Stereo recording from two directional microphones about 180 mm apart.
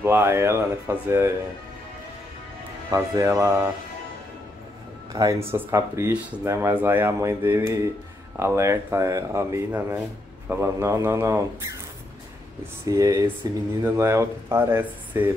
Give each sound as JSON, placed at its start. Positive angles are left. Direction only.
{"t": 0.0, "sound": "speech", "side_deg": -15}
{"t": 2.9, "sound": "speech", "side_deg": -20}
{"t": 5.1, "sound": "speech", "side_deg": -20}
{"t": 12.8, "sound": "speech", "side_deg": -15}